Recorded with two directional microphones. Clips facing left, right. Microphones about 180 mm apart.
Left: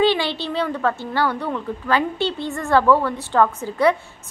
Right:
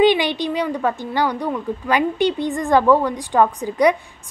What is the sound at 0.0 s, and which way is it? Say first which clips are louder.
A woman's voice: right 3 dB; 15° right (ahead or behind).